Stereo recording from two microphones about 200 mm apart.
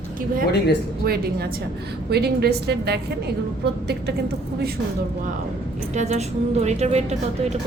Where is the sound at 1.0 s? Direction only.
50° right (ahead or behind).